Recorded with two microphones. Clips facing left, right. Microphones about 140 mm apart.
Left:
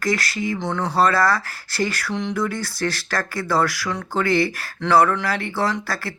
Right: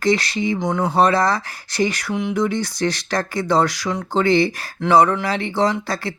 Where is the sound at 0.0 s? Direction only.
20° right (ahead or behind).